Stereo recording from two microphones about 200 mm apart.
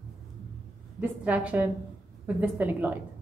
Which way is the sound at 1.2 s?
5° right (ahead or behind).